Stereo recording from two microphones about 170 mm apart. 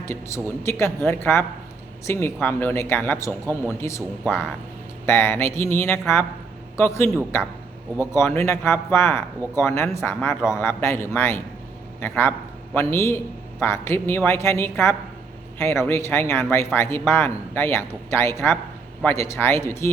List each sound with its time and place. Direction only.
0.0 s speech: 15° left (ahead or behind)
3.4 s speech: 15° right (ahead or behind)
3.7 s speech: 15° left (ahead or behind)
5.0 s speech: 15° left (ahead or behind)
8.1 s a man's voice: 15° left (ahead or behind)